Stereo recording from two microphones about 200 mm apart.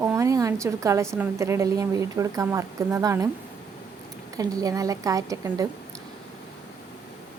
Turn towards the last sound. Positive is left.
turn(degrees=-15)  # may be behind; listen again after turning